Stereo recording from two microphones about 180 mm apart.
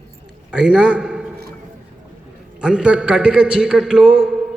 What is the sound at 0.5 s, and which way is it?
Speech, centre (ahead or behind).